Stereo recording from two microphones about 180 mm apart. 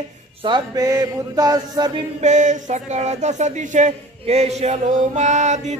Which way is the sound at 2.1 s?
40° right (ahead or behind).